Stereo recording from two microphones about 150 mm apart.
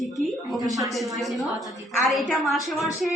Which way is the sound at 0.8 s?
Centre (ahead or behind).